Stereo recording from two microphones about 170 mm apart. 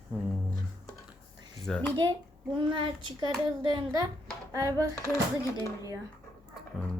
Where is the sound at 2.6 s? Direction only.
30° right (ahead or behind).